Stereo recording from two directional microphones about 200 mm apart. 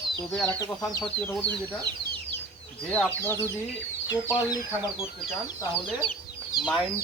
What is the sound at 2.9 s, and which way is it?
Speech, 10° left (ahead or behind).